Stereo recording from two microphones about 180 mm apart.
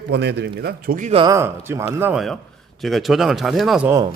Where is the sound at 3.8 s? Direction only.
20° right (ahead or behind).